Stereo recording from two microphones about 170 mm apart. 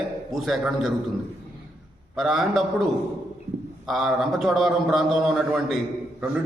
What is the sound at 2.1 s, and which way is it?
Speech, centre (ahead or behind).